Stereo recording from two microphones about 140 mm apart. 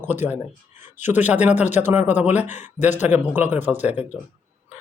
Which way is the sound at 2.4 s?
60° left (ahead or behind).